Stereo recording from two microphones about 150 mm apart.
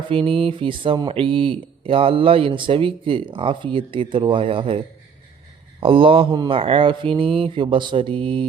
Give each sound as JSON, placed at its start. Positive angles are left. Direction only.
{"t": 0.1, "sound": "speech", "side_deg": -35}
{"t": 5.8, "sound": "speech", "side_deg": -35}